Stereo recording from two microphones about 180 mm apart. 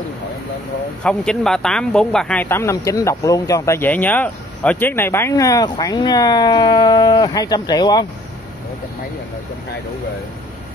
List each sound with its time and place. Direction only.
1.0 s speech: 5° left (ahead or behind); by 8.1 s 20° left (ahead or behind)